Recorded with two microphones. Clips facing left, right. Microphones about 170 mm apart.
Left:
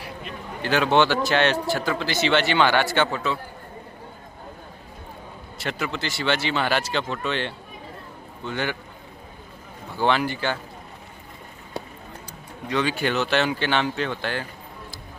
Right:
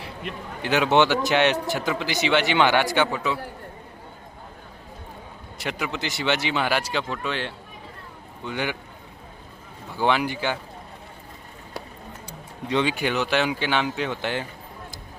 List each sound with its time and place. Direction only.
0.6 s a man's voice: 15° right (ahead or behind)
5.5 s speech: 15° right (ahead or behind)
10.0 s speech: 10° right (ahead or behind)
11.8 s a sound: 20° left (ahead or behind)
12.7 s speech: 20° right (ahead or behind)